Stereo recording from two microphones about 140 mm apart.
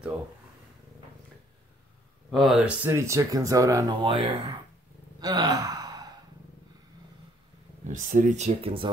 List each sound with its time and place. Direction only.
2.3 s speech: 5° right (ahead or behind)
2.9 s speech: 20° right (ahead or behind); by 4.6 s 40° right (ahead or behind)
5.2 s gasp: 30° right (ahead or behind)
7.8 s speech: 65° right (ahead or behind)
8.5 s speech: 40° right (ahead or behind)